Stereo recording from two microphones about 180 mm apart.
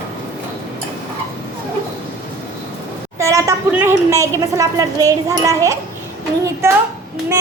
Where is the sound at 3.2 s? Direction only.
15° right (ahead or behind).